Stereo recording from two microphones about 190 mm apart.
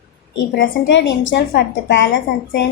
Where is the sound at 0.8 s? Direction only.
70° left (ahead or behind).